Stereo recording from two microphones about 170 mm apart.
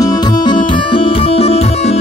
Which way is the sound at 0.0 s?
25° left (ahead or behind).